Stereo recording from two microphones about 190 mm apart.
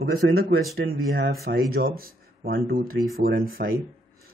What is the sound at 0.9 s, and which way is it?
Speech, 70° right (ahead or behind).